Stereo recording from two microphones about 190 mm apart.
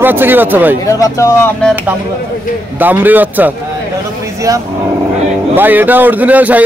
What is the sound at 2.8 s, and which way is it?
A man's voice, 10° right (ahead or behind).